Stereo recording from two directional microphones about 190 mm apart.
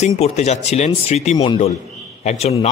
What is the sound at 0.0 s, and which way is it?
A man's voice, 35° left (ahead or behind).